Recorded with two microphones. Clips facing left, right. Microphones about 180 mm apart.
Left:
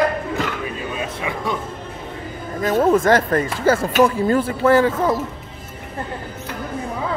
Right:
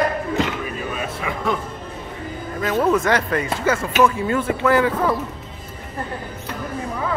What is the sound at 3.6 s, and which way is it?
Speech, 35° left (ahead or behind).